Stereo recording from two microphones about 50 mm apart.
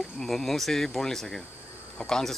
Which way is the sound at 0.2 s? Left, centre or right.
Centre.